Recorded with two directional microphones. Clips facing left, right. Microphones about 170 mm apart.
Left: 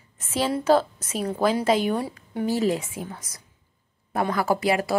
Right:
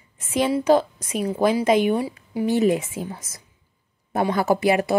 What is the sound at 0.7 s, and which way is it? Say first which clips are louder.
Speech: right 2 dB; 15° right (ahead or behind).